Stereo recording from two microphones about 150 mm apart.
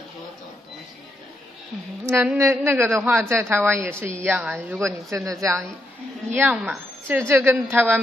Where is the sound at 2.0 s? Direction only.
20° right (ahead or behind).